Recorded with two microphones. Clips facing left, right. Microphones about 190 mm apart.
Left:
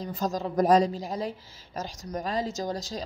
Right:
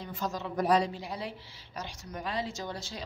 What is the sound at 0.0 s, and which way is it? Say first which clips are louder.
Speech: left 6 dB; 40° left (ahead or behind).